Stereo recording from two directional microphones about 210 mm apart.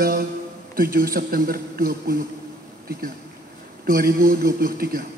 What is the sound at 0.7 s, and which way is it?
A man's voice, 45° right (ahead or behind).